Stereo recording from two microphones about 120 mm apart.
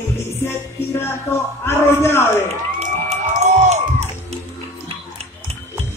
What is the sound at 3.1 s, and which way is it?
Music, 70° right (ahead or behind).